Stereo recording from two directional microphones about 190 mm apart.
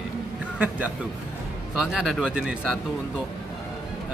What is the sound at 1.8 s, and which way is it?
Speech, centre (ahead or behind).